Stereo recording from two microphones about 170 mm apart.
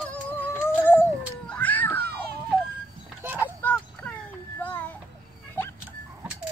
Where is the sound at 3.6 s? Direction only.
10° left (ahead or behind).